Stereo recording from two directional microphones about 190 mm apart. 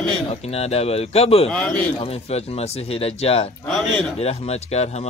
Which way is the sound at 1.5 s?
5° left (ahead or behind).